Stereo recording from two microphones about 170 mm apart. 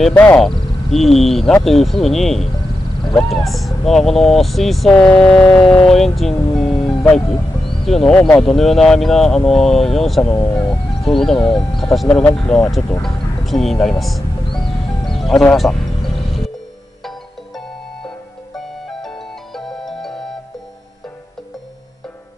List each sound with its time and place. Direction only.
0.0 s speech: 10° left (ahead or behind)
10.3 s speech: 20° left (ahead or behind)
10.7 s speech: centre (ahead or behind)
13.0 s speech: centre (ahead or behind)
15.0 s music: centre (ahead or behind)
18.9 s music: centre (ahead or behind)